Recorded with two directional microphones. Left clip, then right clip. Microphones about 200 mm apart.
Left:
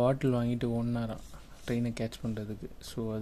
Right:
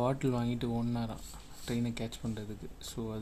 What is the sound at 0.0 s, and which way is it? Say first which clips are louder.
Speech: left 4 dB; 20° left (ahead or behind).